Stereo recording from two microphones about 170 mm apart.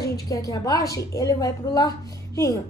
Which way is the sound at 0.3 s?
20° left (ahead or behind).